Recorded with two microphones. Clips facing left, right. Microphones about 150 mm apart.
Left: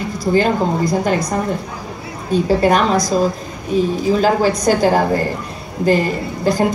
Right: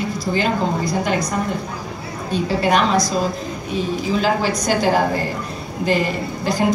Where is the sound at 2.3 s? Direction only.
45° left (ahead or behind).